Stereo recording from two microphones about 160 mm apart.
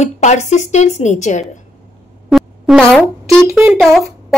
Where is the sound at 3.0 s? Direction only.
5° left (ahead or behind).